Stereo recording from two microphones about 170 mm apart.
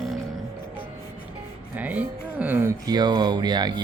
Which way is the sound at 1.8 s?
10° right (ahead or behind).